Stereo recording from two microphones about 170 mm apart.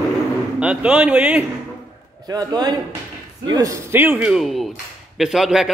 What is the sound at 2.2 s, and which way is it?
A man's voice, 20° right (ahead or behind).